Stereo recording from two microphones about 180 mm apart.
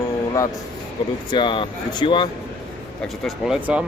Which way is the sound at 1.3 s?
25° left (ahead or behind).